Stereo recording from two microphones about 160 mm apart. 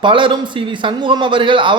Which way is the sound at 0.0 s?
30° right (ahead or behind).